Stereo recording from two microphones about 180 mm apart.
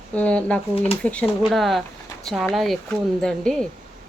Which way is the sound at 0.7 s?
30° left (ahead or behind).